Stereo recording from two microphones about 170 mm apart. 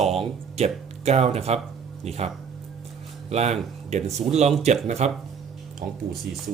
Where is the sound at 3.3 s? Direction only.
40° right (ahead or behind).